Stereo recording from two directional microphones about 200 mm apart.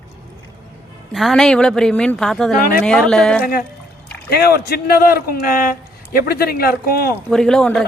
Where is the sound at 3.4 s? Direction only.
50° left (ahead or behind).